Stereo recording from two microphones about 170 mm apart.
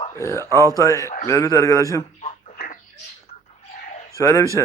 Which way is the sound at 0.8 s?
20° left (ahead or behind).